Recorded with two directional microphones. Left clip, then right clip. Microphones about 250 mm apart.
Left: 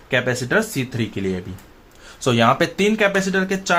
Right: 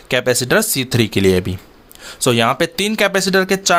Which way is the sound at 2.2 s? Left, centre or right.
Right.